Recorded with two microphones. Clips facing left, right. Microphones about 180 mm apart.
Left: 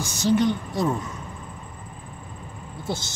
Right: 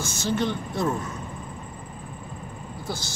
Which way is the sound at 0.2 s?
15° left (ahead or behind).